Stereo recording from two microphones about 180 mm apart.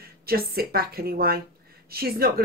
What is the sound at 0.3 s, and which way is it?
A woman's voice, 60° right (ahead or behind).